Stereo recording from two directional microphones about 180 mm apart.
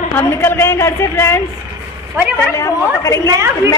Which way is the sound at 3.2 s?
15° right (ahead or behind).